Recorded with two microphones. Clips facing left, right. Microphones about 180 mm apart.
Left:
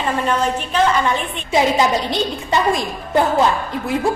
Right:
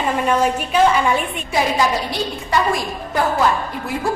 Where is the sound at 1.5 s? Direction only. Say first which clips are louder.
Left 3 dB; 20° left (ahead or behind).